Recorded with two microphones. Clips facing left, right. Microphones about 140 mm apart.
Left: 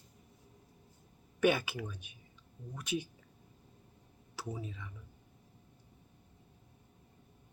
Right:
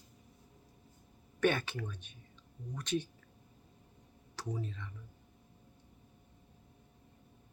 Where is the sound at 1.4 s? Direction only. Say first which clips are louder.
Left 2 dB; 10° left (ahead or behind).